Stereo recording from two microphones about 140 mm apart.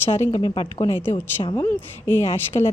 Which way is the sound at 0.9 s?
15° left (ahead or behind).